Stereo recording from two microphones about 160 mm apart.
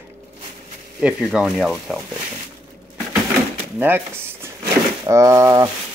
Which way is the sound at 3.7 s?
10° right (ahead or behind).